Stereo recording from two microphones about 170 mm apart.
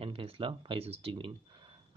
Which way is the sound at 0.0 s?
35° right (ahead or behind).